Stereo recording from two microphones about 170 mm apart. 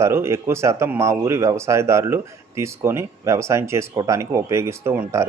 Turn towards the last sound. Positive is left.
turn(degrees=-15)  # may be behind; listen again after turning